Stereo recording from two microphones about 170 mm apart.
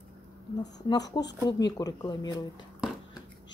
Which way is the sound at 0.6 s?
20° left (ahead or behind).